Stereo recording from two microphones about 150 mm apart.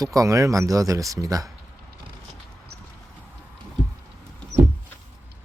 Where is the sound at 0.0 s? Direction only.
25° right (ahead or behind).